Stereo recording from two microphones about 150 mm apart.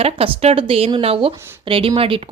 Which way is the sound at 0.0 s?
40° right (ahead or behind).